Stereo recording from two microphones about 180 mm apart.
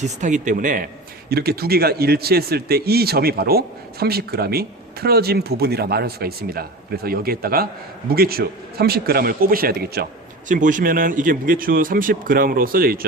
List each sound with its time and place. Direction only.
0.0 s speech: 40° right (ahead or behind)
1.3 s speech: 60° right (ahead or behind)
10.5 s speech: 45° right (ahead or behind)